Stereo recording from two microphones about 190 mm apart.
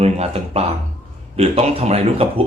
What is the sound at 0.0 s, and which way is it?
A man's voice, 35° right (ahead or behind).